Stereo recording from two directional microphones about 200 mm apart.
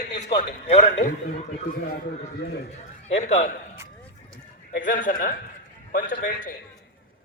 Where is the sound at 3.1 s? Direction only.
35° left (ahead or behind).